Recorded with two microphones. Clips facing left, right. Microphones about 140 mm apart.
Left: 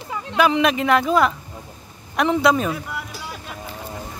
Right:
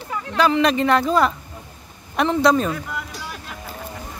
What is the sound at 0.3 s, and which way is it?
Speech, 20° left (ahead or behind).